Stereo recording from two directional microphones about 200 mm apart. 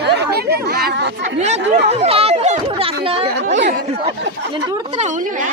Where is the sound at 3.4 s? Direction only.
40° right (ahead or behind).